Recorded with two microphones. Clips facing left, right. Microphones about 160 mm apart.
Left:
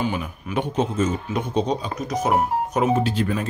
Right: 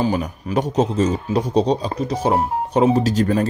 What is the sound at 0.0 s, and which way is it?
Speech, 35° right (ahead or behind).